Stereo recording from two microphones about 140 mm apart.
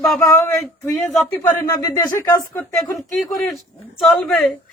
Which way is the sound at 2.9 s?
Centre (ahead or behind).